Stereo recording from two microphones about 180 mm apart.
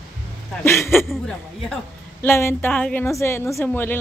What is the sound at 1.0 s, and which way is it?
A woman's voice, 5° left (ahead or behind).